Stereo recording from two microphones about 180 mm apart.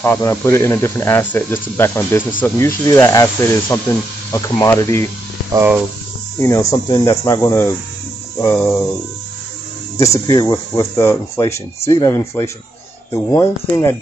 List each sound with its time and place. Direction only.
0.0 s speech: 15° left (ahead or behind)
5.5 s speech: 15° right (ahead or behind)
6.4 s speech: 15° left (ahead or behind)
9.9 s speech: 15° left (ahead or behind)